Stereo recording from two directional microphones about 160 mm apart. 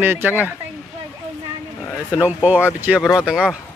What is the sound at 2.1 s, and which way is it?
Speech, 10° right (ahead or behind).